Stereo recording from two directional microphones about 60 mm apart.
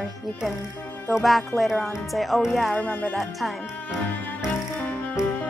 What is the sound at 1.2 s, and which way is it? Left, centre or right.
A woman's voice, centre.